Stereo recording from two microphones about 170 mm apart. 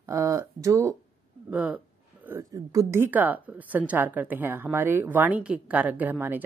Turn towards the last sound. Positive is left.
turn(degrees=-10)  # may be behind; listen again after turning